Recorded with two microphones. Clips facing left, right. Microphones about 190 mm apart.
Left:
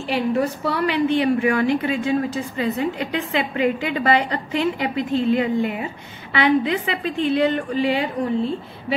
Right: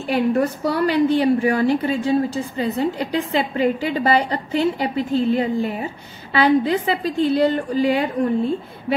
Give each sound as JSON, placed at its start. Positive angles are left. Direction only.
{"t": 0.1, "sound": "a woman's voice", "side_deg": -45}